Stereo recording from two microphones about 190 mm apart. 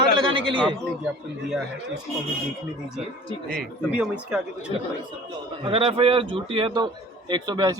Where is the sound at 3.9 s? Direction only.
5° right (ahead or behind).